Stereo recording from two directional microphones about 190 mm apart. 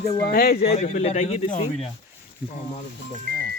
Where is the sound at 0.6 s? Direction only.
35° left (ahead or behind).